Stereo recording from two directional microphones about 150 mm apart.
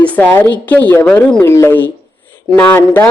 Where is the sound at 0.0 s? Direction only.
10° left (ahead or behind).